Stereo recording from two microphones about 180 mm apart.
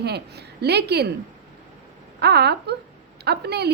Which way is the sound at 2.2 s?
65° right (ahead or behind).